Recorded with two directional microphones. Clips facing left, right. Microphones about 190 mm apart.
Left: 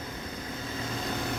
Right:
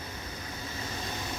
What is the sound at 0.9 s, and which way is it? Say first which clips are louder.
Vehicle: left 7 dB; 60° left (ahead or behind).